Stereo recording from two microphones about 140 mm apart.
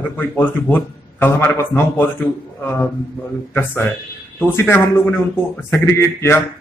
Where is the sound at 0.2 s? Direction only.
15° left (ahead or behind).